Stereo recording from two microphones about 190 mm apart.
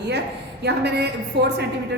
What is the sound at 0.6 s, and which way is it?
Speech, 60° right (ahead or behind).